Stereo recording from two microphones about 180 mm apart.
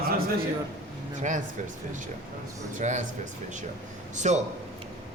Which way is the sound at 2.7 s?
45° right (ahead or behind).